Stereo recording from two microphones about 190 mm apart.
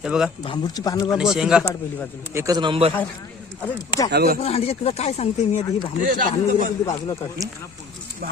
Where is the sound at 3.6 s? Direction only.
20° left (ahead or behind).